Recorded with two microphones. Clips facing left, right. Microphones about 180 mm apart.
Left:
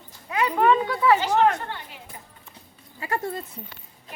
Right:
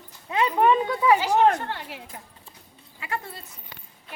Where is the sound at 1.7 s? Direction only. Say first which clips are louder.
Right 3 dB; 85° right.